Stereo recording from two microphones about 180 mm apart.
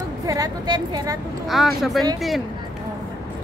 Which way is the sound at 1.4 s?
Centre (ahead or behind).